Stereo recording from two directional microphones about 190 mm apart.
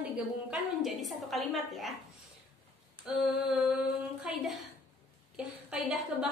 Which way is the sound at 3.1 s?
5° right (ahead or behind).